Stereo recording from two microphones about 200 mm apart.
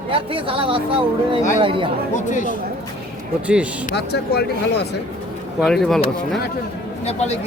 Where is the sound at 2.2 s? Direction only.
40° left (ahead or behind).